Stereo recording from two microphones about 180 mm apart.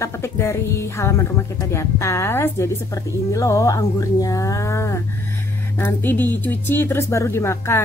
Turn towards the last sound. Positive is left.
turn(degrees=15)  # may be behind; listen again after turning